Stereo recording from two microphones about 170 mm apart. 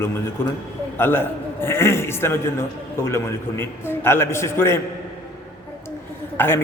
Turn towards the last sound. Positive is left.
turn(degrees=15)  # may be behind; listen again after turning